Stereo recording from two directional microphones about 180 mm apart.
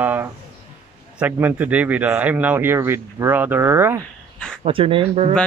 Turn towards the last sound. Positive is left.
turn(degrees=-30)  # may be behind; listen again after turning